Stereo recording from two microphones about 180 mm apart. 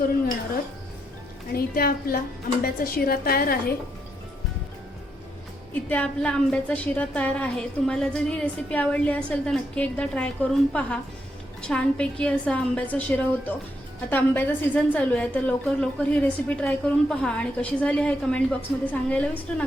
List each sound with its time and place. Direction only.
1.5 s a woman's voice: 55° left (ahead or behind)
5.9 s a woman's voice: 5° left (ahead or behind)